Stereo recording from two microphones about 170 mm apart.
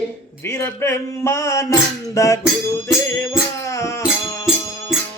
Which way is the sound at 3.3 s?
20° left (ahead or behind).